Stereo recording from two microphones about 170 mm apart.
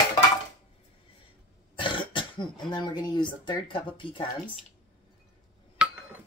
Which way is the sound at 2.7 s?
25° left (ahead or behind).